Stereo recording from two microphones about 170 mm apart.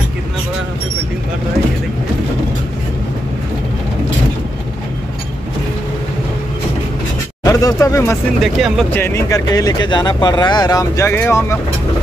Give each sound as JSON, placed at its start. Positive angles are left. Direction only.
{"t": 7.4, "sound": "speech", "side_deg": 20}
{"t": 8.4, "sound": "speech", "side_deg": 0}
{"t": 8.9, "sound": "speech", "side_deg": 15}